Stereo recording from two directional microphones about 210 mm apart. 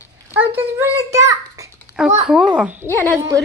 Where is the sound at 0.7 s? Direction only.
15° right (ahead or behind).